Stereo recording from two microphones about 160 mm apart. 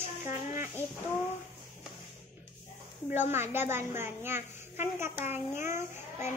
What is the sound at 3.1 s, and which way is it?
A child's voice, 15° right (ahead or behind).